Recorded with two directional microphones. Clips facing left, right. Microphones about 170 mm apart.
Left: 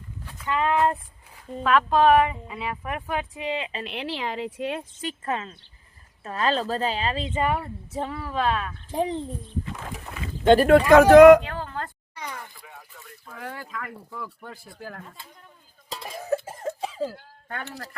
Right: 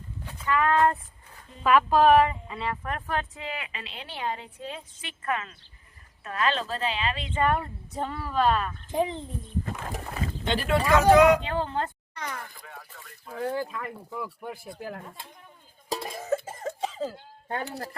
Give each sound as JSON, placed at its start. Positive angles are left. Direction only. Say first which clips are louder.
{"t": 0.4, "sound": "speech", "louder": "even", "side_deg": 20}
{"t": 1.6, "sound": "speech", "louder": "even", "side_deg": -5}
{"t": 3.8, "sound": "a woman's voice", "louder": "left 3 dB", "side_deg": 85}
{"t": 5.2, "sound": "speech", "louder": "right 1 dB", "side_deg": 30}
{"t": 7.3, "sound": "speech", "louder": "right 2 dB", "side_deg": 15}
{"t": 7.5, "sound": "speech", "louder": "left 1 dB", "side_deg": 5}
{"t": 9.0, "sound": "speech", "louder": "left 1 dB", "side_deg": 35}
{"t": 10.4, "sound": "speech", "louder": "left 11 dB", "side_deg": 50}
{"t": 11.4, "sound": "speech", "louder": "right 4 dB", "side_deg": -25}
{"t": 12.1, "sound": "speech", "louder": "even", "side_deg": 10}
{"t": 13.4, "sound": "speech", "louder": "right 6 dB", "side_deg": -30}
{"t": 16.0, "sound": "cough", "louder": "left 3 dB", "side_deg": 5}
{"t": 17.2, "sound": "speech", "louder": "right 4 dB", "side_deg": -25}